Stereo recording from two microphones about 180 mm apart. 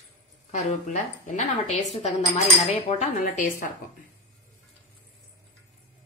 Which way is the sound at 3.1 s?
50° left (ahead or behind).